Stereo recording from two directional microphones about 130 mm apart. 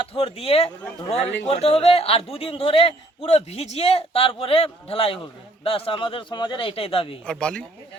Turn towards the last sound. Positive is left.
turn(degrees=5)  # may be behind; listen again after turning